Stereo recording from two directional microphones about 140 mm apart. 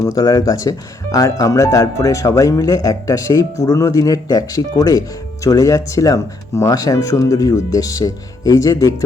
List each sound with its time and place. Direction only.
0.0 s speech: 25° left (ahead or behind)